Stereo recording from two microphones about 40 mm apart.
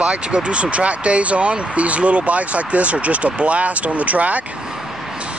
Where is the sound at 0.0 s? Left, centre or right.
Right.